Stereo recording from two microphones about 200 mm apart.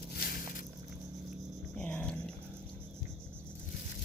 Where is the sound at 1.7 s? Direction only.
5° left (ahead or behind).